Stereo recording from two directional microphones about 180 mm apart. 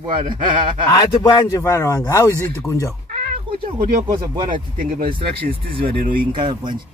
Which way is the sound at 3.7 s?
15° right (ahead or behind).